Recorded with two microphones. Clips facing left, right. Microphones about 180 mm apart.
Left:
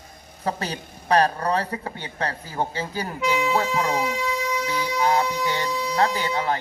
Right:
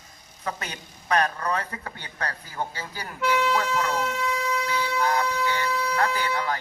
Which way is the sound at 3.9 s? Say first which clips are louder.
Left 2 dB; 10° left (ahead or behind).